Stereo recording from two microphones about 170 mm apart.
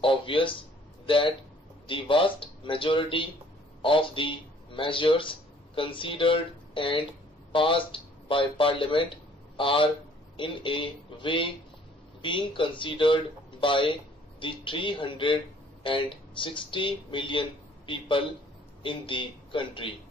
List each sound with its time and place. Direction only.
0.0 s speech: 30° left (ahead or behind)